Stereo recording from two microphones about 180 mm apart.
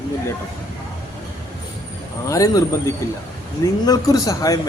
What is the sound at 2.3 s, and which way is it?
Speech, 20° left (ahead or behind).